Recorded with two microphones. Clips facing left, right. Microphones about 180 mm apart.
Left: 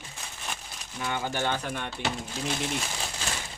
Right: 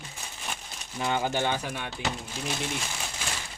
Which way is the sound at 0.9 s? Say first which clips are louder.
Right 3 dB; 25° right (ahead or behind).